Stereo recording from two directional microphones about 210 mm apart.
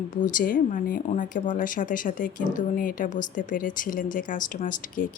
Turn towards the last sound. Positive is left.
turn(degrees=40)  # may be behind; listen again after turning